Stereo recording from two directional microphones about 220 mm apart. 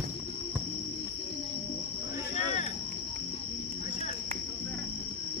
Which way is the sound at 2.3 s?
30° left (ahead or behind).